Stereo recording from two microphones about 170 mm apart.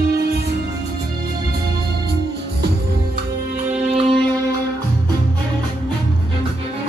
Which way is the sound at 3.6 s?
35° right (ahead or behind).